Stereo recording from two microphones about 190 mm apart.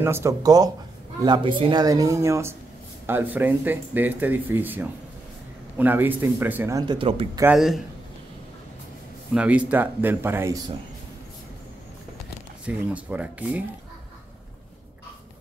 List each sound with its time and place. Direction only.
0.0 s speech: 15° right (ahead or behind)
6.9 s speech: 30° right (ahead or behind)
7.5 s speech: centre (ahead or behind)
9.3 s speech: 5° right (ahead or behind)
12.6 s speech: 5° right (ahead or behind)